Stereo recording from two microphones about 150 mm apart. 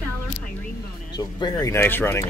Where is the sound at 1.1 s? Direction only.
25° left (ahead or behind).